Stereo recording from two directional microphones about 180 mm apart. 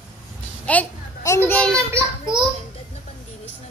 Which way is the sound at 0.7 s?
10° left (ahead or behind).